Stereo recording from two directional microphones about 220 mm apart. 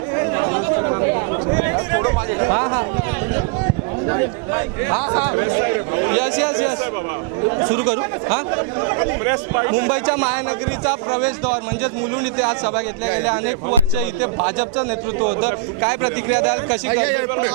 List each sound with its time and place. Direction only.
0.2 s chatter: 15° right (ahead or behind)
4.1 s speech: 15° right (ahead or behind)
7.6 s speech: 20° right (ahead or behind)